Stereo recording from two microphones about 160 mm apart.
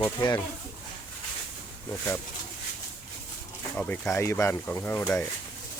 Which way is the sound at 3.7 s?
10° left (ahead or behind).